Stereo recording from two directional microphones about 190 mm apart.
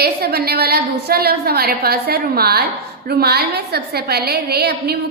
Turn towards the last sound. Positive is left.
turn(degrees=-55)  # may be behind; listen again after turning